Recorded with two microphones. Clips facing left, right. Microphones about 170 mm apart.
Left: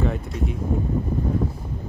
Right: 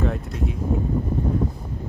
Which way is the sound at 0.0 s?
Centre (ahead or behind).